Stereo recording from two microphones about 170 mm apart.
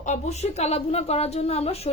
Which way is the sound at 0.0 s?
40° left (ahead or behind).